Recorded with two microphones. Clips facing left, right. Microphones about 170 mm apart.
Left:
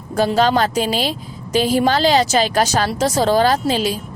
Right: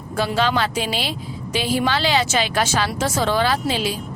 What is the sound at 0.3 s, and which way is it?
Speech, 40° left (ahead or behind).